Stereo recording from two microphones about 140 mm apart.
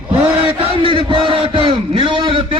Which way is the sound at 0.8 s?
40° right (ahead or behind).